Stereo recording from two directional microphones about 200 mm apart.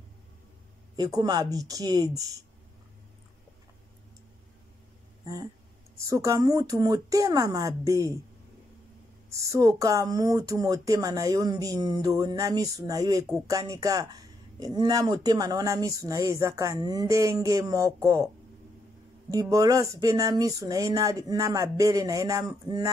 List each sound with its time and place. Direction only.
0.9 s speech: 20° right (ahead or behind)
5.2 s a sound: 15° right (ahead or behind)
5.9 s speech: 15° right (ahead or behind)
9.3 s speech: 15° right (ahead or behind)
19.5 s speech: 15° right (ahead or behind)